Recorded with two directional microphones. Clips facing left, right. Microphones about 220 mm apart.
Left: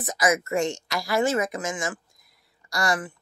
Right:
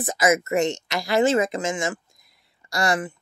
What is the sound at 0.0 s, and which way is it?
Speech, 25° right (ahead or behind).